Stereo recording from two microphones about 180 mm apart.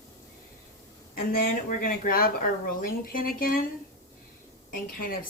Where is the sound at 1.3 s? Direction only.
55° left (ahead or behind).